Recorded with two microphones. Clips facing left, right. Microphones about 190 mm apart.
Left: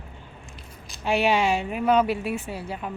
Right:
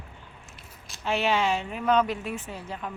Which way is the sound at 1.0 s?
15° left (ahead or behind).